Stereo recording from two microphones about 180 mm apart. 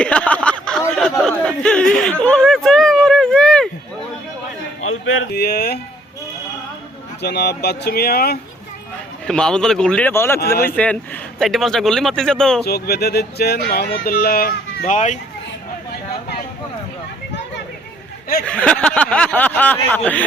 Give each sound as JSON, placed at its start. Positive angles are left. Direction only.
{"t": 0.0, "sound": "a sound", "side_deg": 5}
{"t": 5.0, "sound": "a sound", "side_deg": 90}
{"t": 7.2, "sound": "speech", "side_deg": 70}
{"t": 9.2, "sound": "a man's voice", "side_deg": 5}
{"t": 12.6, "sound": "speech", "side_deg": 60}
{"t": 18.4, "sound": "speech", "side_deg": 5}